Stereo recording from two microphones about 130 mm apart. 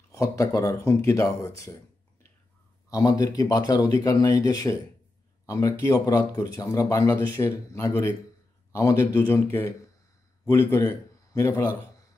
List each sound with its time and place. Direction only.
0.1 s speech: 25° left (ahead or behind)
2.9 s speech: 30° left (ahead or behind)
11.3 s speech: 20° left (ahead or behind)